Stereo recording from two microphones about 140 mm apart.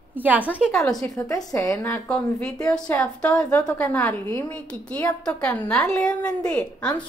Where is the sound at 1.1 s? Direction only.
25° left (ahead or behind).